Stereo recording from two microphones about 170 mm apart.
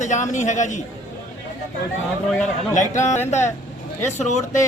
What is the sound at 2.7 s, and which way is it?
Speech, 45° left (ahead or behind).